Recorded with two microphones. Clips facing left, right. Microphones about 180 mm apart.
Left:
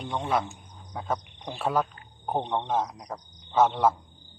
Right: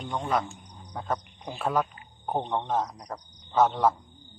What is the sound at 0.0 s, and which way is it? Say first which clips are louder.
Speech: left 1 dB; 5° left (ahead or behind).